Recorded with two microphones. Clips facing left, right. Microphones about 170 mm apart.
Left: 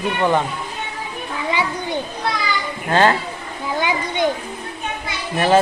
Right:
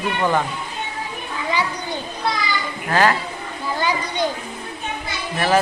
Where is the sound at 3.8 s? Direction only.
20° left (ahead or behind).